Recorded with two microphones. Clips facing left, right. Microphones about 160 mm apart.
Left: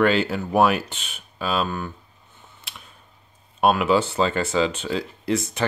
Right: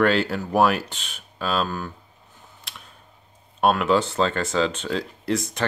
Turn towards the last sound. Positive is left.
turn(degrees=5)  # may be behind; listen again after turning